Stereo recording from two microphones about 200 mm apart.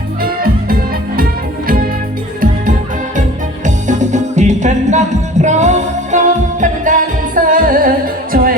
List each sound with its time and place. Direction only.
0.2 s music: 45° right (ahead or behind)
3.8 s music: 35° right (ahead or behind)